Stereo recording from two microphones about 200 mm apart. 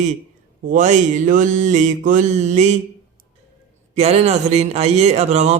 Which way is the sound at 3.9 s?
30° right (ahead or behind).